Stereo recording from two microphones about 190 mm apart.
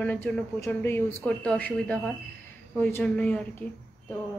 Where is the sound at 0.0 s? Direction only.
10° left (ahead or behind).